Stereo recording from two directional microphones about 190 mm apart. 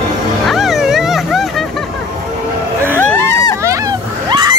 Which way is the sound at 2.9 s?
10° left (ahead or behind).